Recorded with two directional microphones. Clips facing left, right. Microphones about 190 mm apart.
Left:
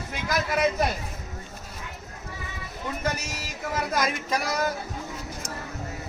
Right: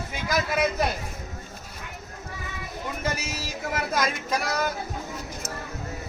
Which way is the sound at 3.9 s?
Centre (ahead or behind).